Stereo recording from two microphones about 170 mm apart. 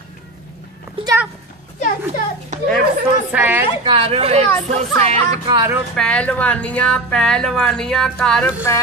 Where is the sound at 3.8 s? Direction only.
30° right (ahead or behind).